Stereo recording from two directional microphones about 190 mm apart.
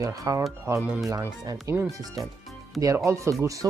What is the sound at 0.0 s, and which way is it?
Speech, 15° right (ahead or behind).